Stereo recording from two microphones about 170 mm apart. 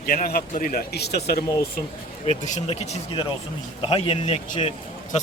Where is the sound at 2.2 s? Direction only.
45° left (ahead or behind).